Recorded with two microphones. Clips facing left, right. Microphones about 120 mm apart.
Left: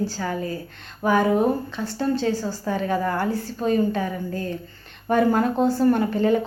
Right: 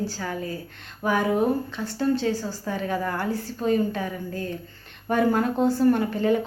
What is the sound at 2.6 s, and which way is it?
Speech, 35° left (ahead or behind).